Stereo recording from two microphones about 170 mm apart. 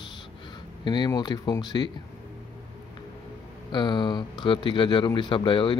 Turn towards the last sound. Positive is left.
turn(degrees=30)  # may be behind; listen again after turning